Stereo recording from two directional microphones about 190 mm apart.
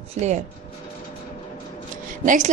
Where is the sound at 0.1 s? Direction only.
35° right (ahead or behind).